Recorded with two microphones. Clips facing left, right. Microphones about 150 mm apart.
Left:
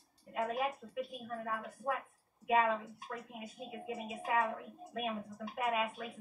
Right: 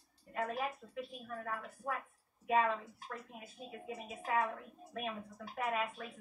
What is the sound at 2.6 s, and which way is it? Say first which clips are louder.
A woman's voice: left 2 dB; 15° left (ahead or behind).